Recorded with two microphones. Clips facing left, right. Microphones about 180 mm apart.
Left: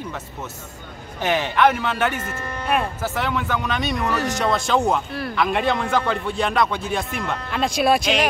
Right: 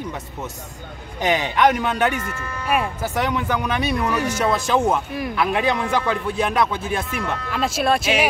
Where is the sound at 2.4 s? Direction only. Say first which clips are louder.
Left 1 dB; 30° left (ahead or behind).